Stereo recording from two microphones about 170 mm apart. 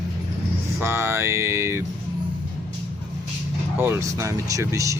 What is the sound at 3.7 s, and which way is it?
Speech, 15° right (ahead or behind).